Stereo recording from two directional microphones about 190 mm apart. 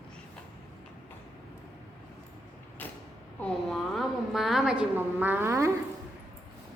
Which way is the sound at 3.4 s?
Centre (ahead or behind).